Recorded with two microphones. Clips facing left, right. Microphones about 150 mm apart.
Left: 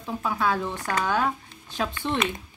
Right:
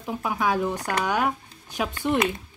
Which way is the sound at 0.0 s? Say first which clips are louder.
Even; 15° right (ahead or behind).